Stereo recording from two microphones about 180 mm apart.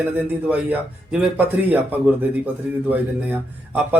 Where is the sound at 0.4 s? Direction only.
10° right (ahead or behind).